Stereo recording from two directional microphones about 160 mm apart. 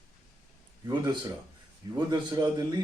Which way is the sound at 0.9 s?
25° right (ahead or behind).